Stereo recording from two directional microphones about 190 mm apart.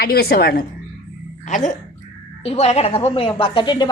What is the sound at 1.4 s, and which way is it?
Speech, 40° left (ahead or behind).